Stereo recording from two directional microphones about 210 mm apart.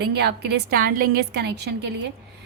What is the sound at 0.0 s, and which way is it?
A woman's voice, 50° right (ahead or behind).